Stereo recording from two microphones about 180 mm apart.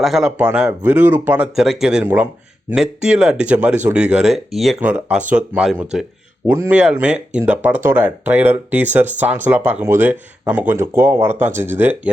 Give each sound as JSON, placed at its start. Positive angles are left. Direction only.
{"t": 0.0, "sound": "speech", "side_deg": 0}